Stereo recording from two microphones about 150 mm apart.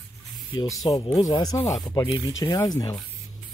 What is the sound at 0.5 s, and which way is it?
Speech, 25° left (ahead or behind).